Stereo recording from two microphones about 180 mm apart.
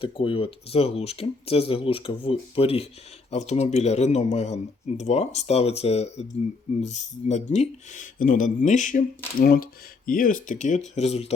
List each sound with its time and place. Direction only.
0.0 s speech: 30° left (ahead or behind)